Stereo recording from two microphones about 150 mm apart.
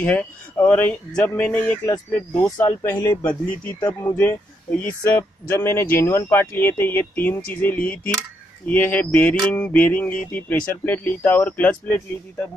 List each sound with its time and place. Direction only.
0.0 s mantra: 10° left (ahead or behind)